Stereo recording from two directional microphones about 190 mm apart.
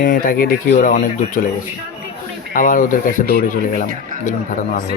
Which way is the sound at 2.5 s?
45° left (ahead or behind).